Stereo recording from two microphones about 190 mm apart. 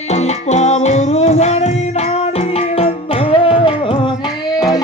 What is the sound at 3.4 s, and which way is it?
Music, 30° left (ahead or behind).